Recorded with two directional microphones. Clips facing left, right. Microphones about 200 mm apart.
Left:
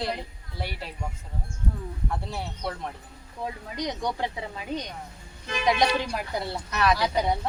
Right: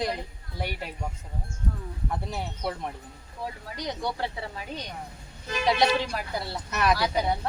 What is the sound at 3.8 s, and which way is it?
Speech, 15° left (ahead or behind).